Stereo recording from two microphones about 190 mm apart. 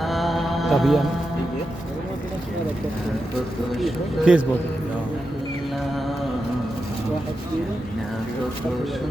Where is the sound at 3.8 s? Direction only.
5° right (ahead or behind).